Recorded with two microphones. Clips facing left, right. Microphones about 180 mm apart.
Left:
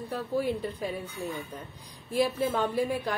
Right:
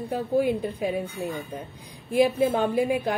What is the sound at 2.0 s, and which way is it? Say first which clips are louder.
A woman's voice: right 6 dB; 20° right (ahead or behind).